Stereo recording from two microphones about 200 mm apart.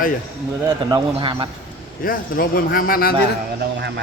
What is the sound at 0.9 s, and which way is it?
Speech, 20° right (ahead or behind).